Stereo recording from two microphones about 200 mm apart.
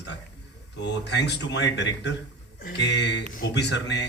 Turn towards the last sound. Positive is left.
turn(degrees=60)  # may be behind; listen again after turning